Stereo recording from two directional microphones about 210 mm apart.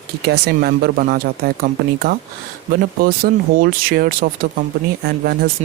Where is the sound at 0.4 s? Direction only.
50° right (ahead or behind).